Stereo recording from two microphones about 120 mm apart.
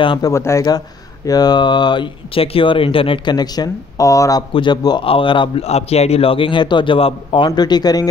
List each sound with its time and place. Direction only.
0.2 s speech: 25° left (ahead or behind); by 3.3 s 50° left (ahead or behind)
3.3 s speech: 35° left (ahead or behind)
4.6 s a man's voice: 40° left (ahead or behind)
5.6 s a man's voice: 60° left (ahead or behind); by 8.1 s 35° left (ahead or behind)